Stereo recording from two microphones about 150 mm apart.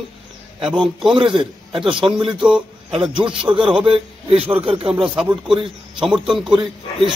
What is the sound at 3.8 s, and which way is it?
A man's voice, 40° right (ahead or behind).